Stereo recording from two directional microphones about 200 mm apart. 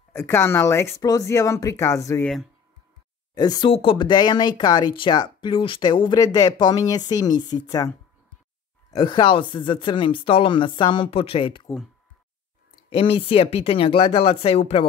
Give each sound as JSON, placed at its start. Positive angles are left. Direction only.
{"t": 0.1, "sound": "speech", "side_deg": 10}
{"t": 3.3, "sound": "speech", "side_deg": 20}
{"t": 8.9, "sound": "speech", "side_deg": 25}
{"t": 12.9, "sound": "speech", "side_deg": 25}